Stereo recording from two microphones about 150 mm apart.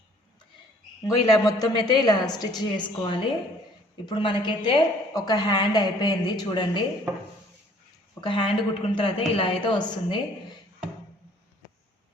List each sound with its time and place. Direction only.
1.0 s a woman's voice: 25° left (ahead or behind)
8.2 s a woman's voice: 35° left (ahead or behind)